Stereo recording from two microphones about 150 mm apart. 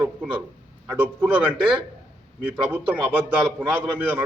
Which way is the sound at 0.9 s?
10° right (ahead or behind).